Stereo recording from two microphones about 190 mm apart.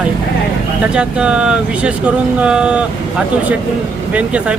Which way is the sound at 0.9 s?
5° right (ahead or behind).